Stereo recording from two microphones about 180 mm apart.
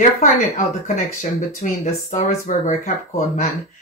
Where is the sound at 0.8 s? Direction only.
45° left (ahead or behind).